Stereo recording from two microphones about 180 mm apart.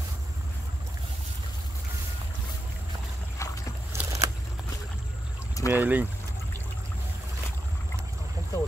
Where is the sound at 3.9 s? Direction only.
15° right (ahead or behind).